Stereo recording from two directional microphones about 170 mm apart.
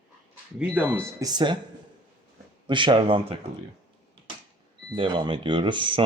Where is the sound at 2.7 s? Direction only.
30° right (ahead or behind).